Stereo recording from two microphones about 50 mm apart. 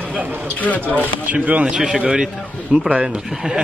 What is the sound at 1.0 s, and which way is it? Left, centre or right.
Speech, right.